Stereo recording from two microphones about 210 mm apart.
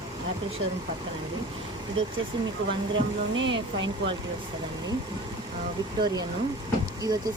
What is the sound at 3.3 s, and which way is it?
Speech, 60° right (ahead or behind).